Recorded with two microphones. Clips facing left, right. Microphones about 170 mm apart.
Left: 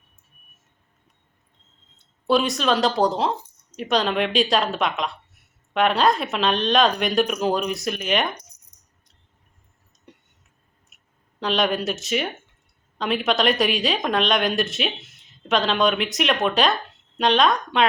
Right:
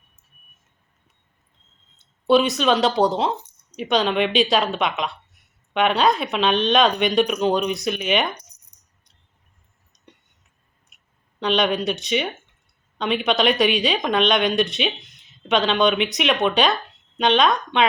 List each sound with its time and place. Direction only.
2.0 s speech: centre (ahead or behind)
8.7 s rattle: 65° right (ahead or behind)
10.9 s clicking: 5° left (ahead or behind)
11.3 s speech: centre (ahead or behind)